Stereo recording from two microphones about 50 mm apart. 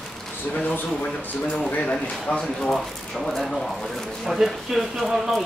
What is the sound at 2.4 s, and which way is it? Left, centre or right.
Speech, centre.